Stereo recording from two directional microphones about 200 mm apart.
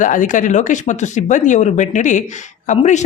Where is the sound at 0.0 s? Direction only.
40° left (ahead or behind).